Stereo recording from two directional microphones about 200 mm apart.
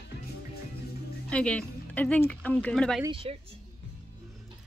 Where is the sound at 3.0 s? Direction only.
25° right (ahead or behind).